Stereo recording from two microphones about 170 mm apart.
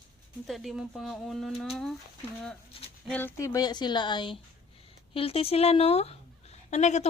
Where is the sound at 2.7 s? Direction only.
35° left (ahead or behind).